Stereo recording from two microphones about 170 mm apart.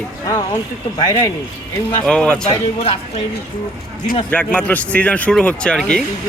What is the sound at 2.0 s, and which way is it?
Speech, 5° left (ahead or behind).